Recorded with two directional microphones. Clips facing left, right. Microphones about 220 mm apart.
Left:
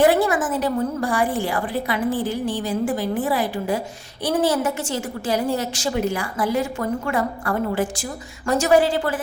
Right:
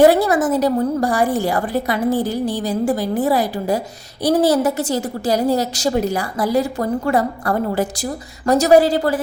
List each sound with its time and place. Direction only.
0.0 s a woman's voice: 40° right (ahead or behind)